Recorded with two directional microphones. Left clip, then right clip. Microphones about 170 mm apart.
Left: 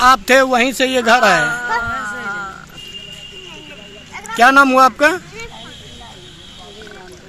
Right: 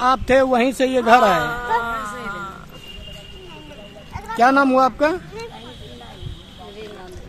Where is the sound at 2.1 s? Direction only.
75° right (ahead or behind).